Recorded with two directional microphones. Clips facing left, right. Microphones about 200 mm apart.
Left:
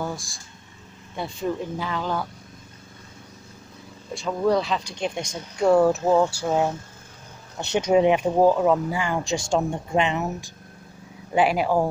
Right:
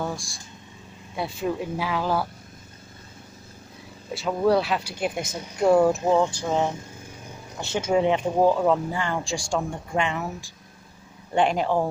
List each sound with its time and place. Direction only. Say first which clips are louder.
0.0 s speech: even; centre (ahead or behind)
4.1 s speech: right 1 dB; 5° right (ahead or behind)
6.0 s speech: left 1 dB; 5° left (ahead or behind)
7.6 s speech: left 3 dB; 20° left (ahead or behind)
11.3 s speech: left 1 dB; 5° left (ahead or behind)